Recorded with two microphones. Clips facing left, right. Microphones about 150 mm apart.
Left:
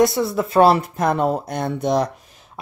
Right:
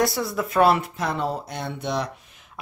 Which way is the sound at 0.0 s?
25° left (ahead or behind).